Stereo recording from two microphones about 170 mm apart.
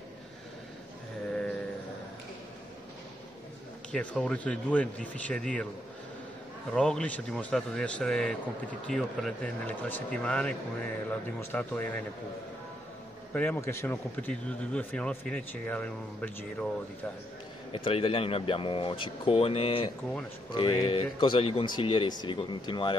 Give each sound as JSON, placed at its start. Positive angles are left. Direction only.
{"t": 3.9, "sound": "speech", "side_deg": 5}
{"t": 6.7, "sound": "speech", "side_deg": 5}
{"t": 13.3, "sound": "speech", "side_deg": 10}
{"t": 17.7, "sound": "a man's voice", "side_deg": 30}